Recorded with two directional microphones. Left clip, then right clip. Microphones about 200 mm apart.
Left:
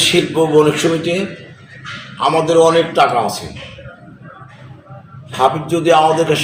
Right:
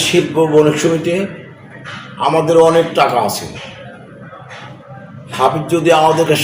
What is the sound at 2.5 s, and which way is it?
Speech, centre (ahead or behind).